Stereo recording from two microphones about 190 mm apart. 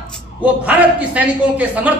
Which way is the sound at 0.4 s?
10° right (ahead or behind).